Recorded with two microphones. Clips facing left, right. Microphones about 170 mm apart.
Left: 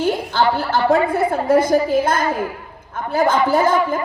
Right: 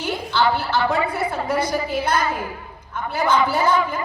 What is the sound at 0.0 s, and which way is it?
A woman's voice, 50° left (ahead or behind).